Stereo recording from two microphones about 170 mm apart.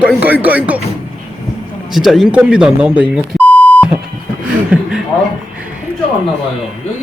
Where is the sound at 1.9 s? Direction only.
Centre (ahead or behind).